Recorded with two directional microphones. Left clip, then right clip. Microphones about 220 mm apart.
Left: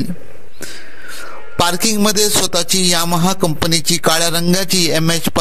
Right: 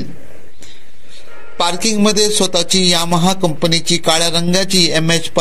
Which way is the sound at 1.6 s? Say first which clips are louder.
Even; 45° left (ahead or behind).